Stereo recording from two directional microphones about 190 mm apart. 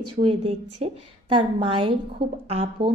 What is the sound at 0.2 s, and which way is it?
A woman's voice, 30° right (ahead or behind).